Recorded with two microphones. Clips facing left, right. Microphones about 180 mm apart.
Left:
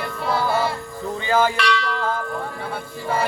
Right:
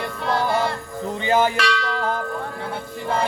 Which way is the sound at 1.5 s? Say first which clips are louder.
Left 1 dB; 40° right (ahead or behind).